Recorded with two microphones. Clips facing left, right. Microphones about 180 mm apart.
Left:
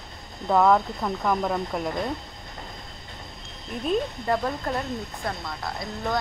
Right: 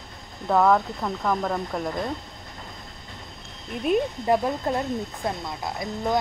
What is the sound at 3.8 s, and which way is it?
Speech, 15° right (ahead or behind).